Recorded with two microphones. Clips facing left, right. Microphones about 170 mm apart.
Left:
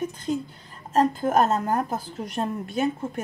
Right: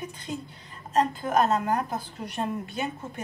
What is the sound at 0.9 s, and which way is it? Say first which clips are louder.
A woman's voice: left 3 dB; 45° left (ahead or behind).